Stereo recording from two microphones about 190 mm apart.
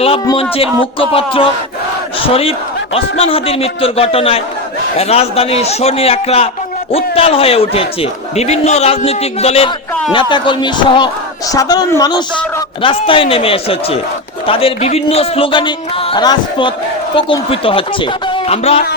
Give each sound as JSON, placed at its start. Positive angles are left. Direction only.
{"t": 0.0, "sound": "a man's voice", "side_deg": 30}